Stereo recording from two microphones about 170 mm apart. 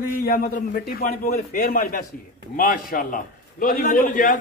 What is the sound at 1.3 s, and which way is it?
A man's voice, 50° left (ahead or behind).